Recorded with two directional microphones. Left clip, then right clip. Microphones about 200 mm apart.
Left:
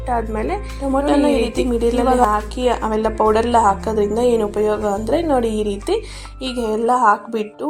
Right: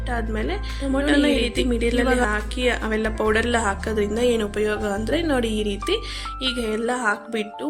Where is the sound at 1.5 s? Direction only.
10° left (ahead or behind).